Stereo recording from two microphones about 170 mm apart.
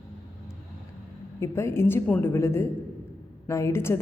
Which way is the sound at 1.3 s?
15° left (ahead or behind).